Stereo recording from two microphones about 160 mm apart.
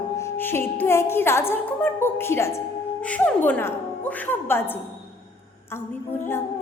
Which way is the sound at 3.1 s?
10° left (ahead or behind).